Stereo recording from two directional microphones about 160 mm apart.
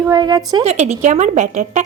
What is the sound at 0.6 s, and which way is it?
A woman's voice, 45° right (ahead or behind).